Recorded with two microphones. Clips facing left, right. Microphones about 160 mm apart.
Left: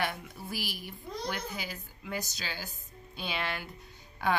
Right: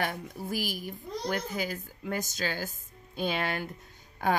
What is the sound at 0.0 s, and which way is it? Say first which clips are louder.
A child's voice: right 2 dB; 40° right (ahead or behind).